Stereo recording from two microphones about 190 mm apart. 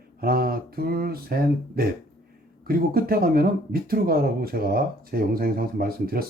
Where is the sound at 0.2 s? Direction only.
50° right (ahead or behind).